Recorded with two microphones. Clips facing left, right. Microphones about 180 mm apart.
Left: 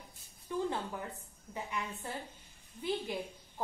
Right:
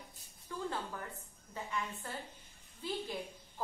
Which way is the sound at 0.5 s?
15° left (ahead or behind).